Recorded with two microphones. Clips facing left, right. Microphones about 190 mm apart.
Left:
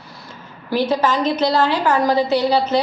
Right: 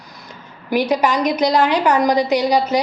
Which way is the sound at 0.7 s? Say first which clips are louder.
Right 1 dB; 15° right (ahead or behind).